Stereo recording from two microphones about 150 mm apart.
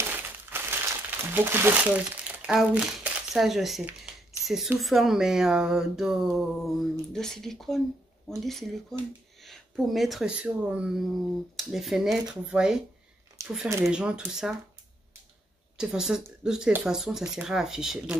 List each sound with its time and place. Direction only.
0.1 s crumpling: 15° right (ahead or behind)
3.8 s speech: 5° right (ahead or behind)
13.4 s a sound: 20° right (ahead or behind)
13.8 s speech: 5° right (ahead or behind)
15.8 s speech: 5° right (ahead or behind)